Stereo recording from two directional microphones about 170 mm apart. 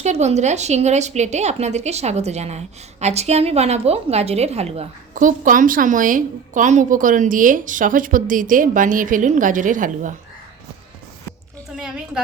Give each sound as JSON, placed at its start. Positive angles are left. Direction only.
{"t": 0.0, "sound": "a woman's voice", "side_deg": -40}